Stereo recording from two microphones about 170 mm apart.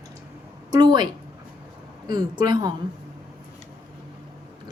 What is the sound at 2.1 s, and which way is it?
Speech, 25° right (ahead or behind).